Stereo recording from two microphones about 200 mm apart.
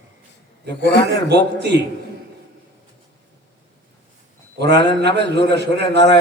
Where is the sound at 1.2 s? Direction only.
55° right (ahead or behind).